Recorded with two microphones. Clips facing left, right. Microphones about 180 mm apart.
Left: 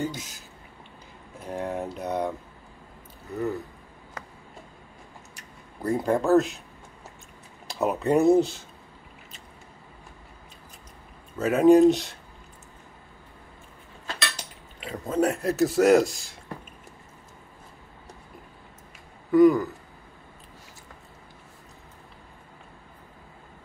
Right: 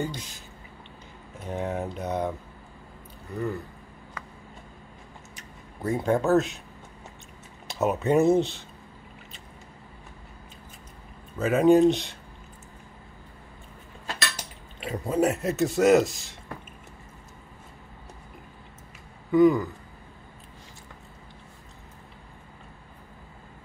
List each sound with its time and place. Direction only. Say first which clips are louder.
0.0 s a man's voice: left 1 dB; 5° left (ahead or behind)
1.4 s a man's voice: even; centre (ahead or behind)
5.8 s a man's voice: even; centre (ahead or behind)
7.6 s a man's voice: even; centre (ahead or behind)
11.3 s a man's voice: left 2 dB; centre (ahead or behind)
14.8 s speech: right 2 dB; 20° right (ahead or behind)
15.1 s a man's voice: left 1 dB; centre (ahead or behind)
19.3 s a man's voice: left 2 dB; centre (ahead or behind)